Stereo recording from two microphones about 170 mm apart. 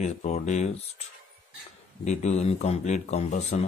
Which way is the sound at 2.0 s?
40° left (ahead or behind).